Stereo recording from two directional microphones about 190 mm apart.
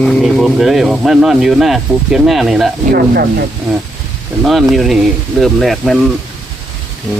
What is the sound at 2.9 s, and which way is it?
Speech, 55° right (ahead or behind).